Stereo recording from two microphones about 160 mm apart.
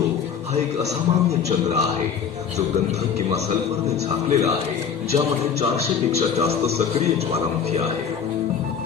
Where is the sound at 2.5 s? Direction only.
45° right (ahead or behind).